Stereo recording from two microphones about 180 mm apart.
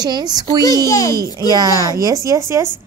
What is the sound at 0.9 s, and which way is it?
Speech, 15° left (ahead or behind).